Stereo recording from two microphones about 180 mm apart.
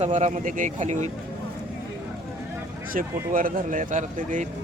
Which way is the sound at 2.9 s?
50° right (ahead or behind).